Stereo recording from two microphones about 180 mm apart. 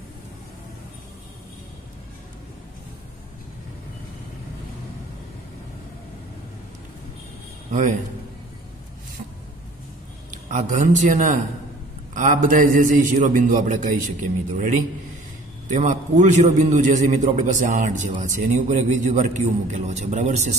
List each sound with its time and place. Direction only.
7.7 s a man's voice: 45° right (ahead or behind)
10.5 s a man's voice: 45° right (ahead or behind)
15.7 s a man's voice: 40° right (ahead or behind)